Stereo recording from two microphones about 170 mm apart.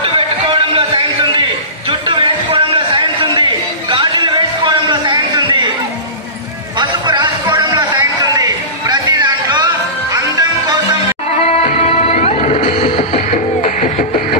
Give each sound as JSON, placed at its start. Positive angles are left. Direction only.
{"t": 0.0, "sound": "music", "side_deg": -30}
{"t": 1.9, "sound": "a sound", "side_deg": -30}
{"t": 6.8, "sound": "music", "side_deg": -25}
{"t": 11.3, "sound": "music", "side_deg": 40}